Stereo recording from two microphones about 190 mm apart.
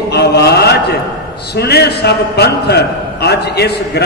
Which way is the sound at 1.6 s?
60° left (ahead or behind).